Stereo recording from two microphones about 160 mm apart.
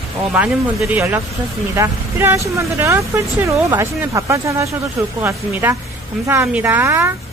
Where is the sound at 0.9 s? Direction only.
10° right (ahead or behind).